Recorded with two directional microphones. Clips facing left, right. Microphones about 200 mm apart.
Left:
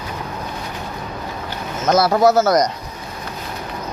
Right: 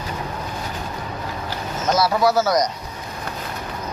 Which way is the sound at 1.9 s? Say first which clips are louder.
Left 4 dB; 55° left (ahead or behind).